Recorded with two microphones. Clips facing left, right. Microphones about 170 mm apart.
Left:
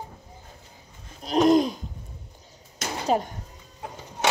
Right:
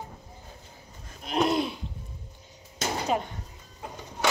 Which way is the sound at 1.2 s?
40° left (ahead or behind).